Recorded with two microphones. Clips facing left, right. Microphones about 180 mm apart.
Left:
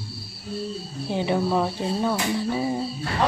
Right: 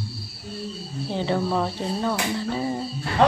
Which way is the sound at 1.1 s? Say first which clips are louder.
Left 1 dB; 15° left (ahead or behind).